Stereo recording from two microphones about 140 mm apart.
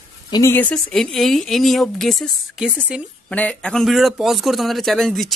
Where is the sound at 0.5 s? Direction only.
5° left (ahead or behind).